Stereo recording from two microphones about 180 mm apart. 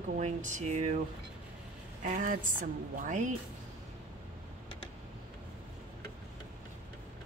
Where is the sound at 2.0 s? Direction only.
50° right (ahead or behind).